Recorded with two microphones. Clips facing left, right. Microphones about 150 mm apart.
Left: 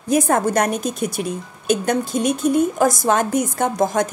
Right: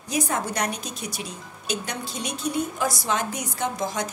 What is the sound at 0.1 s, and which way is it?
A woman's voice, 50° left (ahead or behind).